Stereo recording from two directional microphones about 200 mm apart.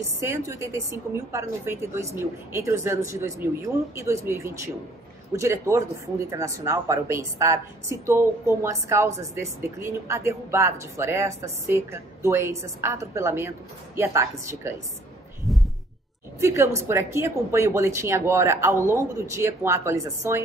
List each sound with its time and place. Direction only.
0.2 s a woman's voice: 15° right (ahead or behind)
15.5 s heart sounds: centre (ahead or behind)
16.3 s a woman's voice: 15° right (ahead or behind)